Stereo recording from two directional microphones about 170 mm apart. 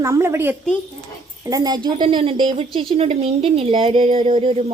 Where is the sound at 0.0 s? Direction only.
15° right (ahead or behind).